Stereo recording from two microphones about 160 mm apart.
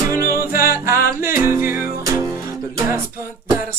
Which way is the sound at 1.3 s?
15° right (ahead or behind).